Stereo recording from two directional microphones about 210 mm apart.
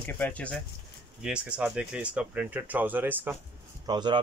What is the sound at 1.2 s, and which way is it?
Speech, 5° right (ahead or behind).